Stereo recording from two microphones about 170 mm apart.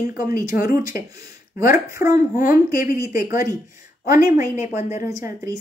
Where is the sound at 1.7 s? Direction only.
20° right (ahead or behind).